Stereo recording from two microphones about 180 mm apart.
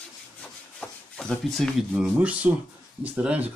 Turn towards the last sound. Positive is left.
turn(degrees=-5)  # may be behind; listen again after turning